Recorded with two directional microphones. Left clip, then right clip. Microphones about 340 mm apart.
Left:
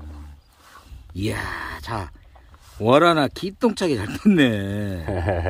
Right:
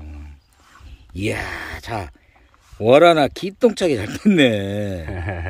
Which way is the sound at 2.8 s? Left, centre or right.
Centre.